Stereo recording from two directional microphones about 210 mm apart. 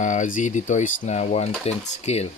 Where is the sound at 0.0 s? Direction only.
35° left (ahead or behind).